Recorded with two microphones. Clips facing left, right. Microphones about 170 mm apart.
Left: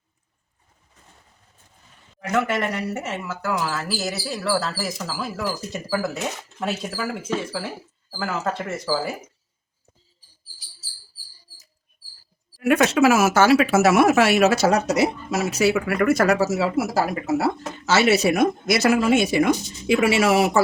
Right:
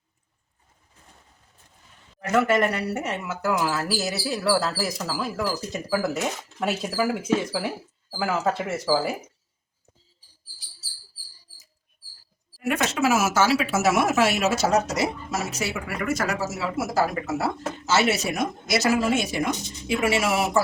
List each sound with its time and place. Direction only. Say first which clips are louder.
2.3 s speech: right 2 dB; centre (ahead or behind)
12.6 s speech: left 6 dB; 65° left (ahead or behind)